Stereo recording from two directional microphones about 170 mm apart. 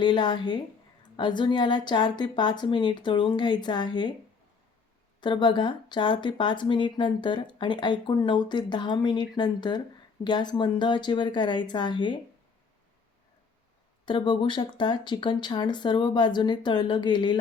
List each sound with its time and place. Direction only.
0.0 s speech: 25° left (ahead or behind)
5.2 s speech: 30° left (ahead or behind)
14.0 s speech: 30° left (ahead or behind)